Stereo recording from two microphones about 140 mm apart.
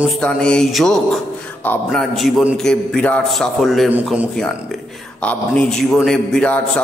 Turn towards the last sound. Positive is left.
turn(degrees=5)  # may be behind; listen again after turning